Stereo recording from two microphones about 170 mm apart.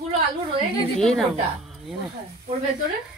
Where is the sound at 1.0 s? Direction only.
5° left (ahead or behind).